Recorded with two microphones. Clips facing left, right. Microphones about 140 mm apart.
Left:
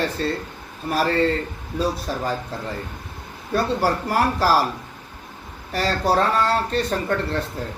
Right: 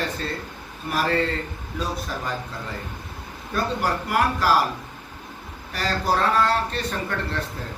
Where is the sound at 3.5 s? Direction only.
35° left (ahead or behind).